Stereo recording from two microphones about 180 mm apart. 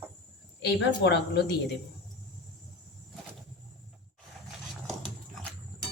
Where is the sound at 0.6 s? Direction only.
70° left (ahead or behind).